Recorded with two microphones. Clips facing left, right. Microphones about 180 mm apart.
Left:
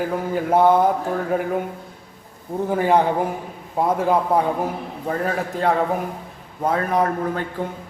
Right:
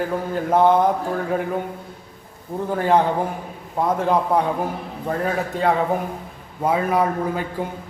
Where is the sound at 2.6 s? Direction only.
10° left (ahead or behind).